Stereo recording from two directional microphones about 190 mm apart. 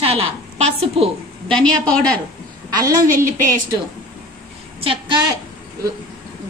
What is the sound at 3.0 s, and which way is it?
Speech, 45° right (ahead or behind).